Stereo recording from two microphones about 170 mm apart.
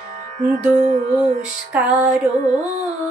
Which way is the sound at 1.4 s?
5° right (ahead or behind).